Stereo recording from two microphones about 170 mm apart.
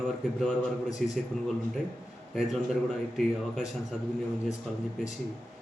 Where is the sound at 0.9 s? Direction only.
Centre (ahead or behind).